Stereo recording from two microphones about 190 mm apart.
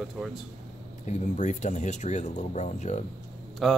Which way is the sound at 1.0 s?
40° left (ahead or behind).